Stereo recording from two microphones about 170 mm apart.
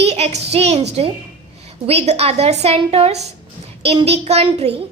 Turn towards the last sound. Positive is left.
turn(degrees=-35)  # may be behind; listen again after turning